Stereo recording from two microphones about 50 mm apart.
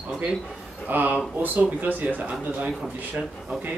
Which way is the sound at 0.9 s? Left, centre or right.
Right.